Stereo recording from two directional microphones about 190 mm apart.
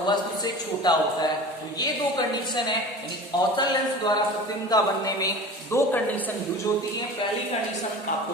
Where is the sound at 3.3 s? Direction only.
25° left (ahead or behind).